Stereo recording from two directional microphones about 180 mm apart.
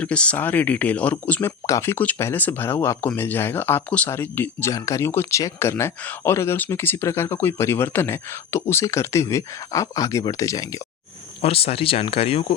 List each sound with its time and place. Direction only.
0.0 s speech: 5° left (ahead or behind)
11.4 s speech: 35° left (ahead or behind)